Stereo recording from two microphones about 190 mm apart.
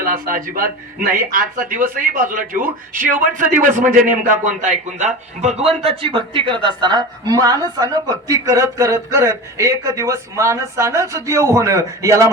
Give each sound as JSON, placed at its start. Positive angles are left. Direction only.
{"t": 0.0, "sound": "speech", "side_deg": -45}
{"t": 3.8, "sound": "a man's voice", "side_deg": -10}
{"t": 4.4, "sound": "a man's voice", "side_deg": -40}